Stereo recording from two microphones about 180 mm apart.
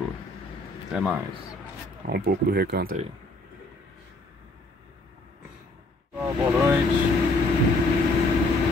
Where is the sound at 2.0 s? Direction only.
60° right (ahead or behind).